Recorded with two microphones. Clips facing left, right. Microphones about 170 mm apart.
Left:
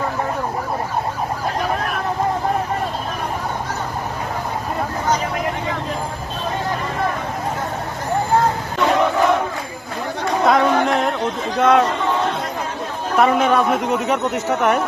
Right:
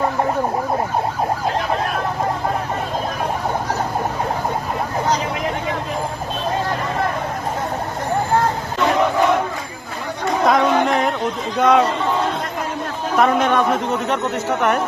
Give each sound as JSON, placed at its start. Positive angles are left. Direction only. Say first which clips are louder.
{"t": 10.4, "sound": "a sound", "louder": "even", "side_deg": 0}
{"t": 11.5, "sound": "a man's voice", "louder": "even", "side_deg": 0}
{"t": 13.1, "sound": "a man's voice", "louder": "left 1 dB", "side_deg": 0}